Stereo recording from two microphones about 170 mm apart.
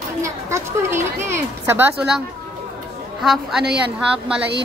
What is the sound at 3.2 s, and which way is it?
Speech, 5° right (ahead or behind).